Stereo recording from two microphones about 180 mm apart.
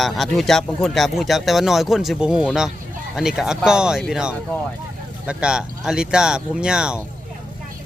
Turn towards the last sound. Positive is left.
turn(degrees=-5)  # may be behind; listen again after turning